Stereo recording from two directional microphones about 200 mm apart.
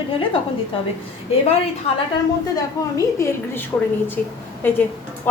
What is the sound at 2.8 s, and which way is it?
A woman's voice, 20° left (ahead or behind).